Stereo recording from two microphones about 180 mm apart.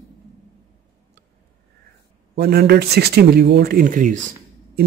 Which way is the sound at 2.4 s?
60° right (ahead or behind).